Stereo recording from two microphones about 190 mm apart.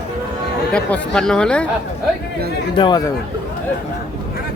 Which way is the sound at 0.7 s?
5° left (ahead or behind).